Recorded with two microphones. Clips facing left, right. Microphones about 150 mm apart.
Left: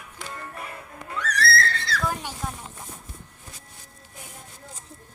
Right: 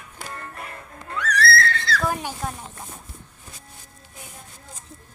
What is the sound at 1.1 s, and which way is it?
Neigh, 35° left (ahead or behind).